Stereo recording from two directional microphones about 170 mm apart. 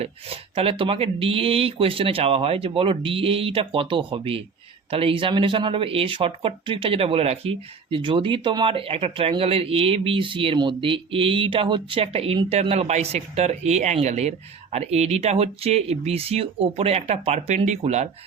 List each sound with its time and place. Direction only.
0.0 s speech: 35° right (ahead or behind)